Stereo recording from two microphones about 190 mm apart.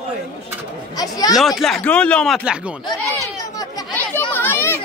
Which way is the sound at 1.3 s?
Centre (ahead or behind).